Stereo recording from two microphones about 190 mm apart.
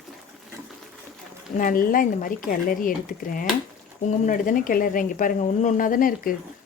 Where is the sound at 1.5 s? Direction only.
45° left (ahead or behind).